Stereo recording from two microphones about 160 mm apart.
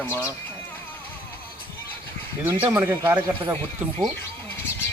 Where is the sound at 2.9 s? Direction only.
20° right (ahead or behind).